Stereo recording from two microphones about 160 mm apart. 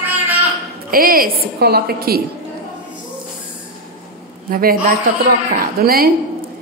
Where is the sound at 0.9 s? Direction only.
65° right (ahead or behind).